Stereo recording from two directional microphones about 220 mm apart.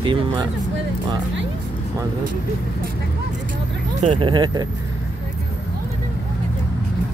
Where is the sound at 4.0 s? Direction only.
30° right (ahead or behind).